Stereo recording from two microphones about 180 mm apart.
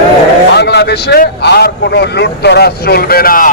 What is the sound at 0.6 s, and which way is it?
A man's voice, 65° left (ahead or behind).